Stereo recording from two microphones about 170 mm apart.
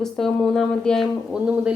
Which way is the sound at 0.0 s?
Centre (ahead or behind).